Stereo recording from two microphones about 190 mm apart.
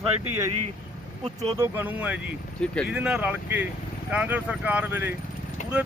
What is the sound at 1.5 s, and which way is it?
Speech, 15° right (ahead or behind).